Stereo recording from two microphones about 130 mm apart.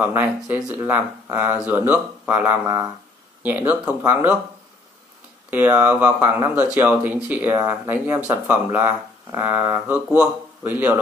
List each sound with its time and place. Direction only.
0.0 s speech: 15° right (ahead or behind)
5.5 s a man's voice: 15° right (ahead or behind)